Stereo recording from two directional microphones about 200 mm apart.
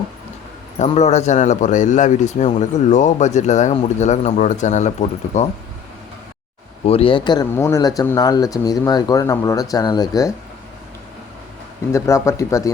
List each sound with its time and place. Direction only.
0.8 s a man's voice: 35° left (ahead or behind)
6.8 s speech: 30° left (ahead or behind)
11.9 s speech: 15° left (ahead or behind)